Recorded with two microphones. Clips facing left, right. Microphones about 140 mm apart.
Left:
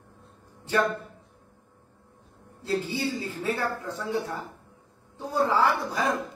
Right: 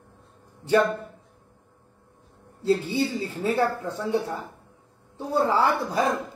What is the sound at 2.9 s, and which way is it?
Speech, 25° right (ahead or behind).